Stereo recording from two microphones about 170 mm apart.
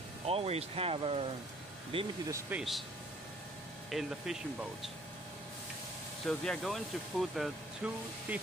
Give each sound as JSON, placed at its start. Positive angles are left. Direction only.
{"t": 0.3, "sound": "speech", "side_deg": -35}
{"t": 2.5, "sound": "speech", "side_deg": -10}
{"t": 3.9, "sound": "speech", "side_deg": 0}
{"t": 6.2, "sound": "speech", "side_deg": 5}